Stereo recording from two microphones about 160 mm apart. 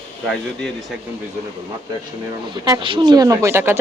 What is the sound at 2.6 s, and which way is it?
Speech, 30° right (ahead or behind).